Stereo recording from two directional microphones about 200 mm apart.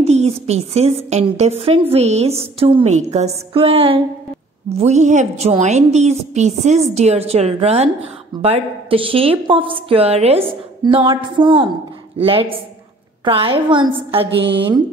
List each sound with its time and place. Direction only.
0.0 s a woman's voice: 35° right (ahead or behind)